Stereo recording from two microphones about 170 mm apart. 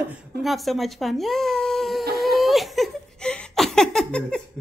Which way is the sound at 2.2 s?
Centre (ahead or behind).